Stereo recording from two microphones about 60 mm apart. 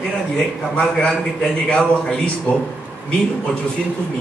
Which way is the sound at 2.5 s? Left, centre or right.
Left.